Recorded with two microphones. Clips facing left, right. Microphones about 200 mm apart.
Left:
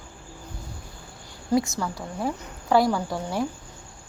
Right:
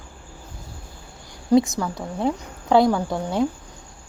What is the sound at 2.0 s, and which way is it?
A woman's voice, 20° right (ahead or behind).